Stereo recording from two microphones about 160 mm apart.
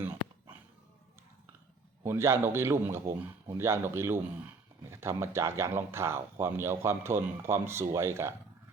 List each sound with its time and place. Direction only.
2.0 s speech: 15° right (ahead or behind)